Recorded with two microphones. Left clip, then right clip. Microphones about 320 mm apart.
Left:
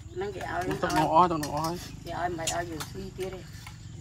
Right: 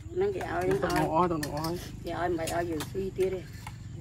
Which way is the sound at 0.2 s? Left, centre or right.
Centre.